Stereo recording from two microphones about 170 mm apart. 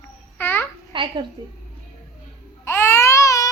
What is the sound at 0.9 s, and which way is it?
Speech, 30° right (ahead or behind).